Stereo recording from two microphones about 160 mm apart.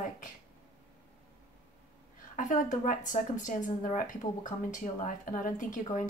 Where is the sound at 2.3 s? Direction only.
55° left (ahead or behind).